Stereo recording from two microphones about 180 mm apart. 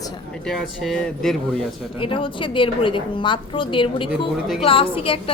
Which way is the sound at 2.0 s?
30° left (ahead or behind).